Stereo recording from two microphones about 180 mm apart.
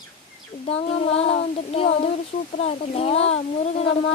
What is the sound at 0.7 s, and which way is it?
A child's voice, 35° left (ahead or behind).